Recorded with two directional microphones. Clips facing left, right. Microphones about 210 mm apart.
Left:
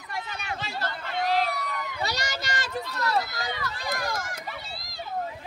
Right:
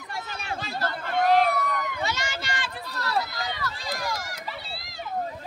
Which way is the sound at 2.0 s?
40° left (ahead or behind).